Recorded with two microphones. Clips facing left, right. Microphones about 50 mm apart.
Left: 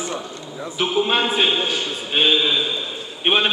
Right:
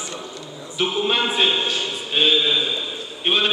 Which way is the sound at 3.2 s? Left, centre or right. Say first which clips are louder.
Left 2 dB; left.